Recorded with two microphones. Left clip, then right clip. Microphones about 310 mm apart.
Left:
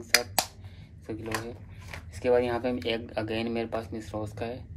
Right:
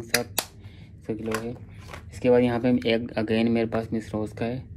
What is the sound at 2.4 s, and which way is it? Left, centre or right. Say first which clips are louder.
Speech: right 5 dB; right.